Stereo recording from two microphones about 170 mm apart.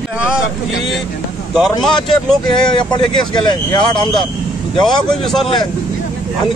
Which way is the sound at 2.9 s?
25° left (ahead or behind).